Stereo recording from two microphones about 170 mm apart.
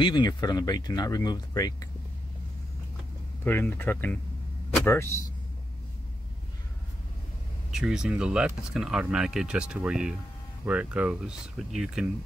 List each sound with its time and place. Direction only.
0.0 s speech: 25° left (ahead or behind)
3.4 s speech: 10° left (ahead or behind)
7.7 s speech: 5° right (ahead or behind)